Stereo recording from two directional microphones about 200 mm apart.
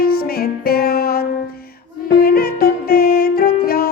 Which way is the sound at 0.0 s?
50° left (ahead or behind).